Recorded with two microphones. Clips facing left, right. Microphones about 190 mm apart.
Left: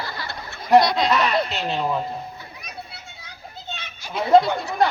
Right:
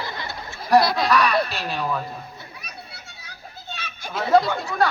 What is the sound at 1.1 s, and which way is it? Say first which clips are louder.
Speech: right 1 dB; 20° left (ahead or behind).